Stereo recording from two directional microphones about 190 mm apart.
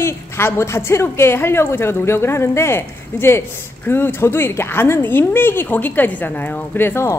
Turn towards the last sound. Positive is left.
turn(degrees=10)  # may be behind; listen again after turning